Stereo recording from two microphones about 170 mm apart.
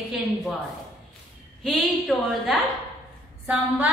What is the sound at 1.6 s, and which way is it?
A woman's voice, centre (ahead or behind).